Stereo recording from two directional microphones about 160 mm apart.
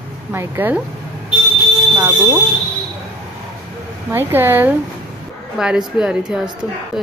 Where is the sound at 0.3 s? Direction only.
15° right (ahead or behind).